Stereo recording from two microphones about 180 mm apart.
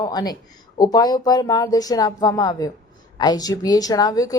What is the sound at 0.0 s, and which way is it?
Speech, 20° left (ahead or behind).